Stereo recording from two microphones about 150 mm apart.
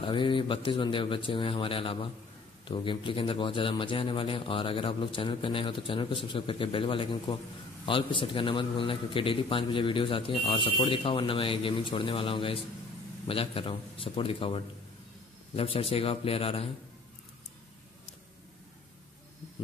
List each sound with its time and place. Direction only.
0.0 s a man's voice: 35° left (ahead or behind)